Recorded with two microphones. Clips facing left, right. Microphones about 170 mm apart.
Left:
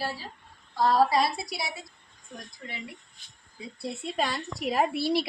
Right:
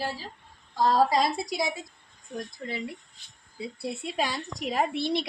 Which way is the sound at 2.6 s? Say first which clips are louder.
Right 6 dB; 35° right (ahead or behind).